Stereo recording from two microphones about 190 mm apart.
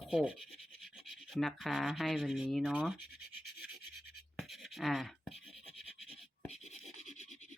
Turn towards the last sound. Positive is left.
turn(degrees=40)  # may be behind; listen again after turning